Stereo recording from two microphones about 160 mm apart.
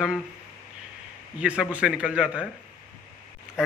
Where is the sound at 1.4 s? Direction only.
5° right (ahead or behind).